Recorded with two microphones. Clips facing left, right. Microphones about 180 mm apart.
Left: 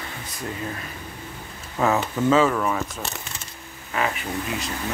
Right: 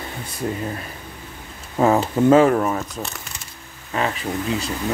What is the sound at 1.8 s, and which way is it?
Speech, 30° right (ahead or behind).